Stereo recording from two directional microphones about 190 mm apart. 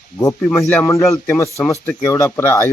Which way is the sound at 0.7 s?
15° left (ahead or behind).